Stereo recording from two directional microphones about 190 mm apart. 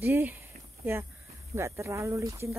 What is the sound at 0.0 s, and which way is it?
Speech, 10° right (ahead or behind).